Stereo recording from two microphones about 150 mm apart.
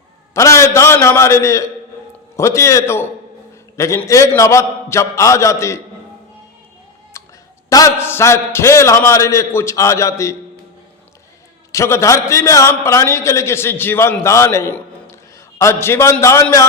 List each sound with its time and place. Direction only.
0.3 s a man's voice: 20° left (ahead or behind)
7.1 s a sound: 20° left (ahead or behind)
7.7 s a man's voice: 25° left (ahead or behind)
11.7 s a man's voice: 20° left (ahead or behind)